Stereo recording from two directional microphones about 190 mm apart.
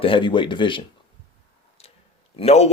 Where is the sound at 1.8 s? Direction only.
35° left (ahead or behind).